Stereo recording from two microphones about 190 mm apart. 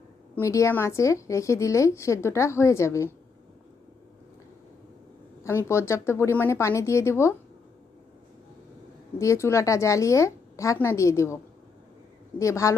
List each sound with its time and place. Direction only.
0.3 s a woman's voice: 15° left (ahead or behind)
5.4 s a woman's voice: 15° left (ahead or behind)
9.1 s a woman's voice: 15° left (ahead or behind)
12.4 s a woman's voice: 15° left (ahead or behind)